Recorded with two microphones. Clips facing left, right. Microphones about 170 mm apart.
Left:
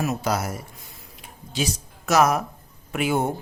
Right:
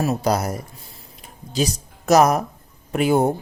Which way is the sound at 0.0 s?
35° right (ahead or behind).